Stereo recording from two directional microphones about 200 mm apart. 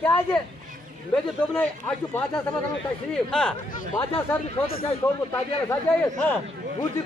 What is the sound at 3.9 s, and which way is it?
Speech, 25° left (ahead or behind).